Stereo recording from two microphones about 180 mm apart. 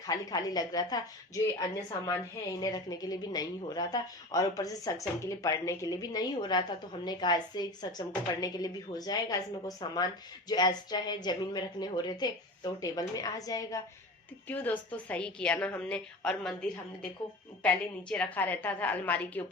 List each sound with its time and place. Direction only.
0.1 s a woman's voice: 20° left (ahead or behind)